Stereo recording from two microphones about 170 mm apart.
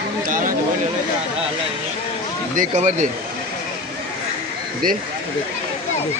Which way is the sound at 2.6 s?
45° right (ahead or behind).